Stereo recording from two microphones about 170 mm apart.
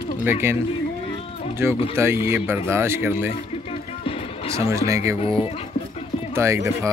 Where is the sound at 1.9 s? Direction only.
15° right (ahead or behind).